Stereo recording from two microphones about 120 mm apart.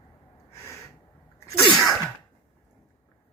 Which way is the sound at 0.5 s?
25° left (ahead or behind).